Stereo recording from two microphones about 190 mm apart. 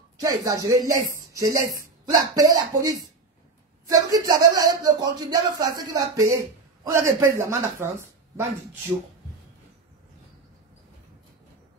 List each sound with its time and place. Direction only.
0.2 s speech: 20° right (ahead or behind)